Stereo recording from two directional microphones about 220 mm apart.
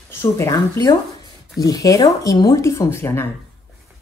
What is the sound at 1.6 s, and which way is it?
Speech, 15° left (ahead or behind).